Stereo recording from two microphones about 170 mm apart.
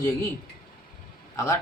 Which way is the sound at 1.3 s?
20° left (ahead or behind).